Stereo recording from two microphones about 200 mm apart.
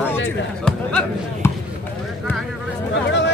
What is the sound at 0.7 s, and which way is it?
Basketball bounce, 5° left (ahead or behind).